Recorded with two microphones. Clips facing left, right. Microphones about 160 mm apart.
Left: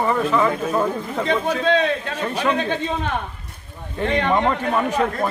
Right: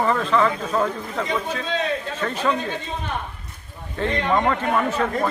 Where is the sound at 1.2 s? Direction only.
70° left (ahead or behind).